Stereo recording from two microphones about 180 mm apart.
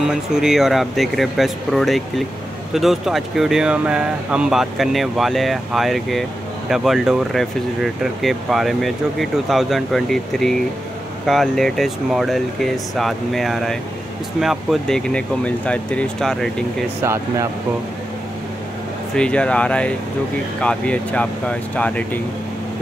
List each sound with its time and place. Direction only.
0.1 s speech: 5° right (ahead or behind)
17.0 s speech: 15° right (ahead or behind)
19.1 s speech: 5° left (ahead or behind)